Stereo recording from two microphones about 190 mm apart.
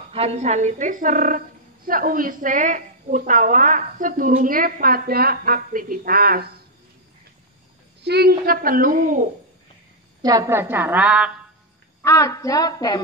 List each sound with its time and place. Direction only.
0.1 s a woman's voice: 30° right (ahead or behind); by 6.6 s 55° right (ahead or behind)
8.0 s a woman's voice: 60° right (ahead or behind); by 9.3 s 45° right (ahead or behind)
10.2 s a woman's voice: 20° right (ahead or behind)
12.0 s a woman's voice: 15° left (ahead or behind)